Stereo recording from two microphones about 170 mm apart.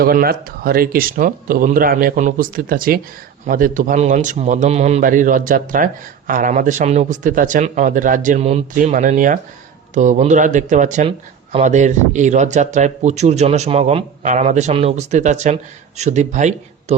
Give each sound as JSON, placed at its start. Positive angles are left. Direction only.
{"t": 0.0, "sound": "a man's voice", "side_deg": -60}